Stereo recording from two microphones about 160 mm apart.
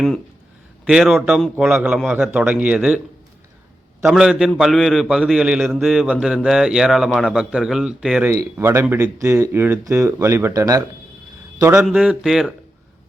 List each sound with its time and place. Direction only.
0.9 s a man's voice: 5° right (ahead or behind)
4.0 s a man's voice: 5° right (ahead or behind)
8.3 s speech: 15° right (ahead or behind)
11.9 s a man's voice: centre (ahead or behind)